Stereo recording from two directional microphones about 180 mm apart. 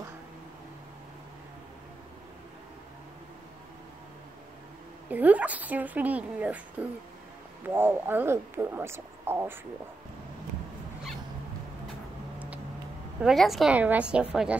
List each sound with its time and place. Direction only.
5.1 s speech: 10° right (ahead or behind)
13.2 s a woman's voice: centre (ahead or behind)